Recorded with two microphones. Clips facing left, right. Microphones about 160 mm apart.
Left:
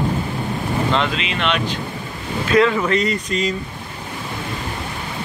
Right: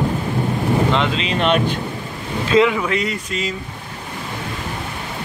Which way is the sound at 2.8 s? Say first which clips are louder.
Left 2 dB; 5° right (ahead or behind).